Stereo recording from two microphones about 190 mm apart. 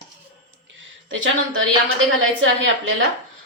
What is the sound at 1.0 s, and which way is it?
A woman's voice, 90° right.